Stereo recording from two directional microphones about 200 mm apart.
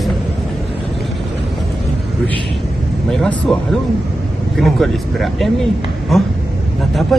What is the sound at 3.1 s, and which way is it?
Speech, centre (ahead or behind).